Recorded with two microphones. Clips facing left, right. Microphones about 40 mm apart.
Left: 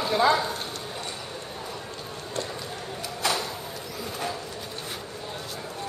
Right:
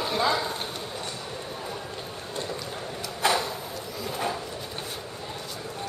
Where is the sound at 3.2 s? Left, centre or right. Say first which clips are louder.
Right 3 dB; centre.